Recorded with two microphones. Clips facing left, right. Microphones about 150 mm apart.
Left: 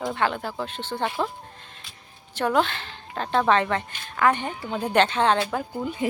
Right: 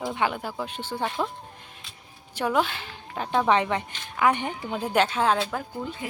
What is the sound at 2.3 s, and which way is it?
A woman's voice, 10° right (ahead or behind).